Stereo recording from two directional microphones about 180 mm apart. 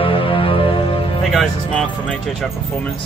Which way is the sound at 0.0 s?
30° left (ahead or behind).